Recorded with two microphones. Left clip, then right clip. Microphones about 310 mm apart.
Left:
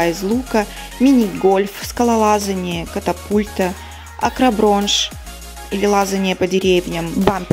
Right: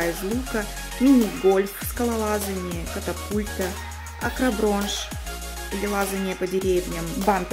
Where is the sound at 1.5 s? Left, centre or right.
Centre.